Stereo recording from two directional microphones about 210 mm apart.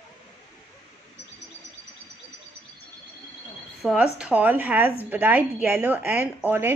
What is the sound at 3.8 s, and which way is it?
A woman's voice, centre (ahead or behind).